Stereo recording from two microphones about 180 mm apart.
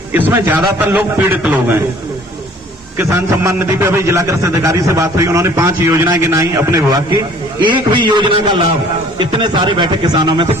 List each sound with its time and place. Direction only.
0.1 s a man's voice: 10° right (ahead or behind)
3.0 s a man's voice: 15° right (ahead or behind)